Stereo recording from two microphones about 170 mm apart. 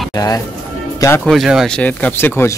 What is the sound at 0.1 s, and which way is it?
Speech, 20° left (ahead or behind).